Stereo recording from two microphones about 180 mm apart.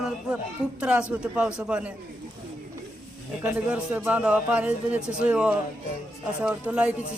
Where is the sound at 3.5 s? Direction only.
5° right (ahead or behind).